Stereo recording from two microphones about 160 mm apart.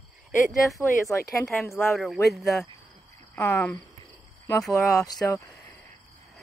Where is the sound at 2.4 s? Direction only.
20° left (ahead or behind).